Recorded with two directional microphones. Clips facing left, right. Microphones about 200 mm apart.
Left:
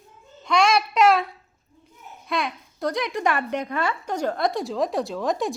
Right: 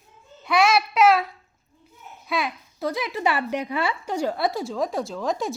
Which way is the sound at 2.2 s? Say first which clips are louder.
Even; 5° right (ahead or behind).